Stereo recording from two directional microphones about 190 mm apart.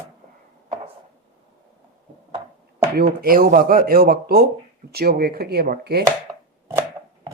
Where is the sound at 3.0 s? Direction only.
50° right (ahead or behind).